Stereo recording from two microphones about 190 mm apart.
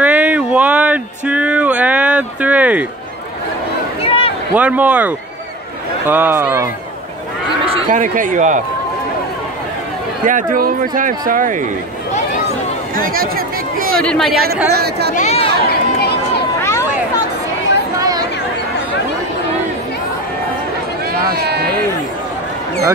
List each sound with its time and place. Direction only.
0.0 s a sound: 10° right (ahead or behind)
4.0 s a sound: 30° left (ahead or behind)
4.6 s speech: 10° right (ahead or behind)
7.9 s speech: 45° right (ahead or behind)
10.2 s speech: 45° right (ahead or behind)
12.9 s a sound: 50° right (ahead or behind)
13.7 s chatter: 50° right (ahead or behind)
14.0 s speech: centre (ahead or behind)
14.7 s speech: 60° right (ahead or behind)
15.1 s speech: 35° left (ahead or behind)
15.7 s crowd: 60° left (ahead or behind)
17.9 s chatter: 20° right (ahead or behind)
21.4 s a sound: 55° right (ahead or behind)